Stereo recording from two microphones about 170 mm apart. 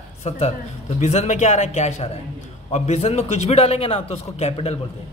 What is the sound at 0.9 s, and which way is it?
A man's voice, 45° left (ahead or behind).